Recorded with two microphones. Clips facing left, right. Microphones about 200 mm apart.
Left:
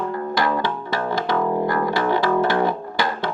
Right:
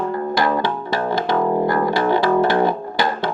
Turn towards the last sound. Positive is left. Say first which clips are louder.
# right 3 dB
turn(degrees=-35)  # may be behind; listen again after turning